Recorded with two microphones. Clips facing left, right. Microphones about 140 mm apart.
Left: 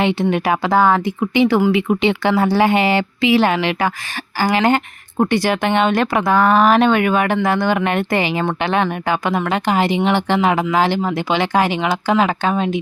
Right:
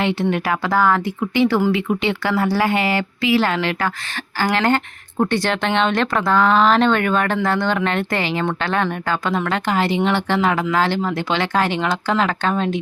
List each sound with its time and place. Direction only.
0.0 s speech: 20° left (ahead or behind)